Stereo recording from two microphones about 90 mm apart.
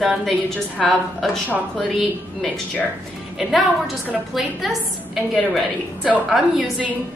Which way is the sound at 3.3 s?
Centre (ahead or behind).